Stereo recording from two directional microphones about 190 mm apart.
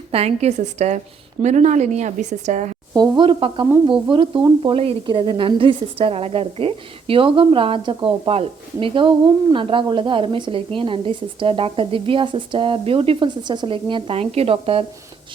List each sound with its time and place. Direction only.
0.1 s a woman's voice: 35° right (ahead or behind)
2.9 s a woman's voice: 20° right (ahead or behind)